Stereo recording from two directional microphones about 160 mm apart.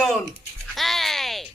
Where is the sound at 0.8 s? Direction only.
Centre (ahead or behind).